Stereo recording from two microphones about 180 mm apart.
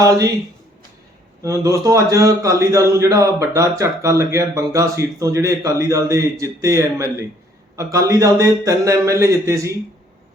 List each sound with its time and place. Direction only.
0.0 s speech: 20° right (ahead or behind)
1.4 s speech: 20° right (ahead or behind)